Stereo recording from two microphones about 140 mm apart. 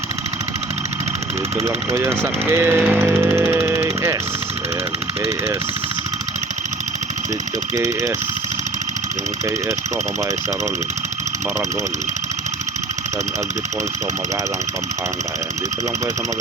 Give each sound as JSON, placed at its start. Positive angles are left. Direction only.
{"t": 1.5, "sound": "speech", "side_deg": -20}